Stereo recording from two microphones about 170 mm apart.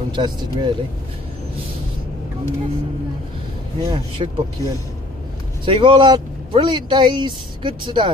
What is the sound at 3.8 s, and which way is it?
Speech, 30° right (ahead or behind).